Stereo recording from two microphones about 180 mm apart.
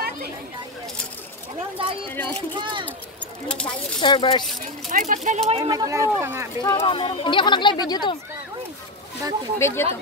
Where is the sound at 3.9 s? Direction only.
25° left (ahead or behind).